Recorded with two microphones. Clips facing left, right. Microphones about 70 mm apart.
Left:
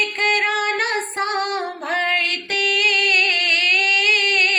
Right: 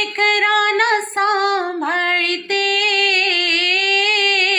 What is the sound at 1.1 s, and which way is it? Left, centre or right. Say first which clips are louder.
Female singing: right 6 dB; right.